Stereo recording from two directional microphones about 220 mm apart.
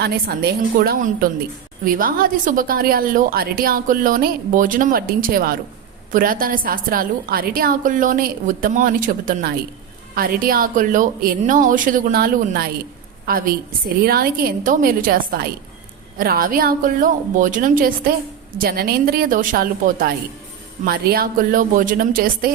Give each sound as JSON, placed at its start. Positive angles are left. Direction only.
{"t": 0.0, "sound": "a woman's voice", "side_deg": -45}